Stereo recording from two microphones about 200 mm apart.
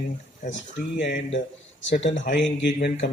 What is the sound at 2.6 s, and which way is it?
Speech, 60° left (ahead or behind).